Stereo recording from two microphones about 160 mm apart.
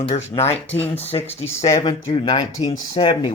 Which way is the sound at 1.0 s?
40° left (ahead or behind).